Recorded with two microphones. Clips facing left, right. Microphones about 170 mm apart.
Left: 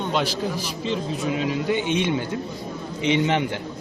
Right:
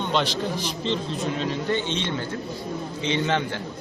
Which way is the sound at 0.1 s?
5° left (ahead or behind).